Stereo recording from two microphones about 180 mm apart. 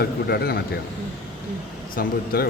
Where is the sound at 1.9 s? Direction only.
55° left (ahead or behind).